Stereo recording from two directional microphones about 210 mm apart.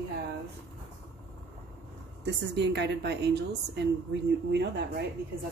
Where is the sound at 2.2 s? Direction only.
55° right (ahead or behind).